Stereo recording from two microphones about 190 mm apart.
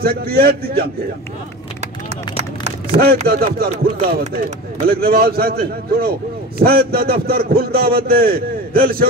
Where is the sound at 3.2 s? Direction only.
50° right (ahead or behind).